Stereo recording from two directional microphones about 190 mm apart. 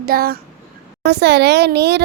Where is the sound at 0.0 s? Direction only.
50° right (ahead or behind).